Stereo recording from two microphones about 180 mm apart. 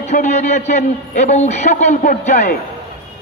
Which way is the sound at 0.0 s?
40° left (ahead or behind).